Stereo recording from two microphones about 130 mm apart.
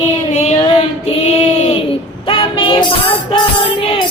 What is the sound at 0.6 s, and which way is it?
Female singing, 40° left (ahead or behind).